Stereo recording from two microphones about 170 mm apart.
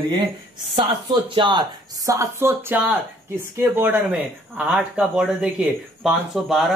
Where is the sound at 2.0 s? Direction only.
15° right (ahead or behind); by 6.7 s centre (ahead or behind).